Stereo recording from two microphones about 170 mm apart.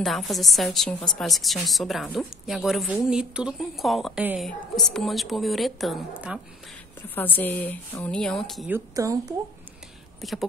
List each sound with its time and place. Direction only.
0.0 s a woman's voice: centre (ahead or behind)
4.5 s a woman's voice: centre (ahead or behind)
7.0 s a woman's voice: 10° left (ahead or behind)
8.6 s speech: 15° right (ahead or behind)
10.2 s a woman's voice: centre (ahead or behind)